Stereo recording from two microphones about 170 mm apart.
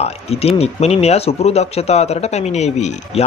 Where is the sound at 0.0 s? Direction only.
35° left (ahead or behind).